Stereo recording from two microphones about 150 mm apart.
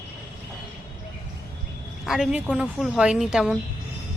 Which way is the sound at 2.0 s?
Centre (ahead or behind).